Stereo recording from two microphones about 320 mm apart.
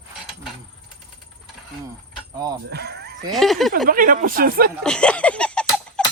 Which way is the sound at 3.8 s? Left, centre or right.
Right.